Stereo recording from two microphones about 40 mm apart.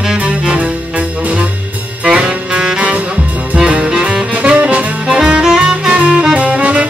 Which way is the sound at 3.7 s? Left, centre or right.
Right.